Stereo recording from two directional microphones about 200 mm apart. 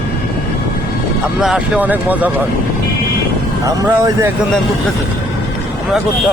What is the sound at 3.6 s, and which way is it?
Speech, 15° right (ahead or behind).